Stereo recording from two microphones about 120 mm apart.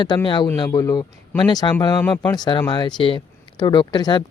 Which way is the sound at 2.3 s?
35° left (ahead or behind).